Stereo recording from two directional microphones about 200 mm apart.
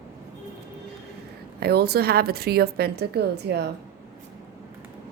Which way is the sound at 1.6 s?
55° right (ahead or behind).